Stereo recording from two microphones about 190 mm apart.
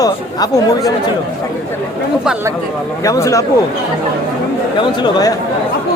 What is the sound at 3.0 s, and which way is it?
Speech, 15° left (ahead or behind).